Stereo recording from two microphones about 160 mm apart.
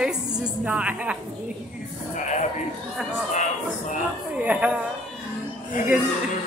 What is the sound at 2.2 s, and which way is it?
Speech, 50° left (ahead or behind).